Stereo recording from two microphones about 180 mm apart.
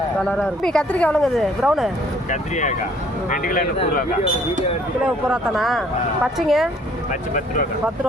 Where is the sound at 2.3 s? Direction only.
40° left (ahead or behind).